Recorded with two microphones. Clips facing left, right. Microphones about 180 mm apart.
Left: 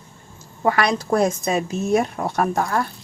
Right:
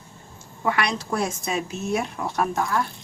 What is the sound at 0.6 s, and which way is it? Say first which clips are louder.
A woman's voice: left 5 dB; 45° left (ahead or behind).